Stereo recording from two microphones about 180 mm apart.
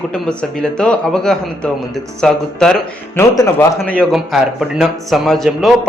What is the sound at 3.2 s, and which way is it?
Speech, 15° left (ahead or behind).